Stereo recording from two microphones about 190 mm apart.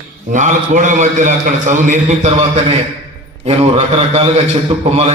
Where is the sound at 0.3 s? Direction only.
40° right (ahead or behind).